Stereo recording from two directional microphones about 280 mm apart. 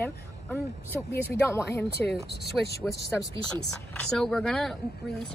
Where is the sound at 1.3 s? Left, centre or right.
Centre.